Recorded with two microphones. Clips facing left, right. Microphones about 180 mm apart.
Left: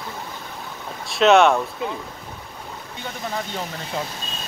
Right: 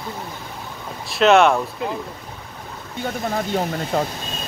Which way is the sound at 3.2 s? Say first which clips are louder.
Right 6 dB; 45° right (ahead or behind).